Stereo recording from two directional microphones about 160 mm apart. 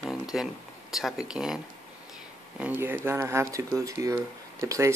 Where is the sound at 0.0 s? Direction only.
5° right (ahead or behind).